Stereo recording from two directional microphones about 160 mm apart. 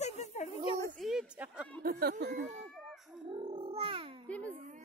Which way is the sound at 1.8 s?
60° right (ahead or behind).